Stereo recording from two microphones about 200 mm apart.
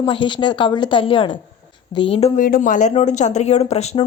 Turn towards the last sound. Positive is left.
turn(degrees=30)  # may be behind; listen again after turning